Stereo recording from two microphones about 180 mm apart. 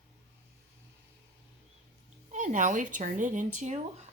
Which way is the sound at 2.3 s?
45° right (ahead or behind).